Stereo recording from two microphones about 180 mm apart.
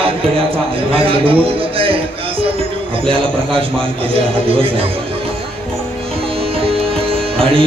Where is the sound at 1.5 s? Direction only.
30° right (ahead or behind).